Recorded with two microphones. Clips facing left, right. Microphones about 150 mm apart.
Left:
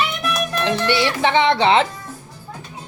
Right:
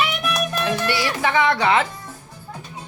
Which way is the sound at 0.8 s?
25° left (ahead or behind).